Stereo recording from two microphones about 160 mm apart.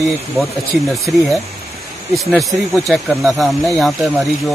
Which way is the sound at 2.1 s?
Centre (ahead or behind).